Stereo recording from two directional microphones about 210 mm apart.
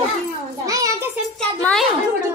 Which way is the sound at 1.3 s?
5° left (ahead or behind).